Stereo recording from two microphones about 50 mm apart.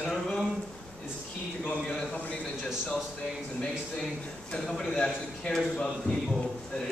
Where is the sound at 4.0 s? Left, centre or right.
Centre.